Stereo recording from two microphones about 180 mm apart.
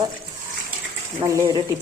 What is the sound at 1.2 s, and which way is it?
Speech, 20° right (ahead or behind).